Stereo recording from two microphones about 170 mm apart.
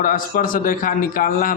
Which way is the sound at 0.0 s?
55° left (ahead or behind).